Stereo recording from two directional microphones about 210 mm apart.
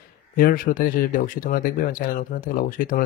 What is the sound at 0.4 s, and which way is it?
Speech, 40° left (ahead or behind).